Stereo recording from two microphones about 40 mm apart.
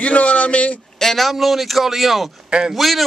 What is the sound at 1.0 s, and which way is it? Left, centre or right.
A man's voice, centre.